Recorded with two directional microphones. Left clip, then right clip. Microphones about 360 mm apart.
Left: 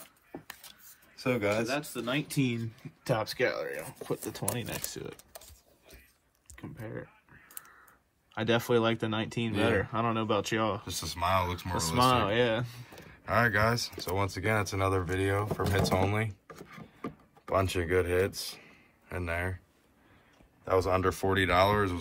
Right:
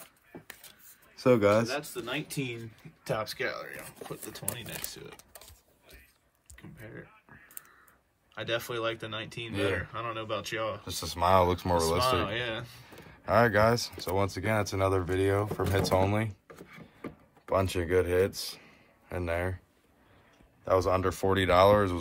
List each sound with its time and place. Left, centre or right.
0.0 s a sound: centre
1.1 s speech: centre
1.8 s speech: centre
6.5 s a sound: centre
8.4 s speech: centre
10.8 s speech: centre
12.3 s speech: centre
12.8 s speech: centre
16.4 s drawer open or close: centre
17.5 s speech: centre
20.6 s speech: centre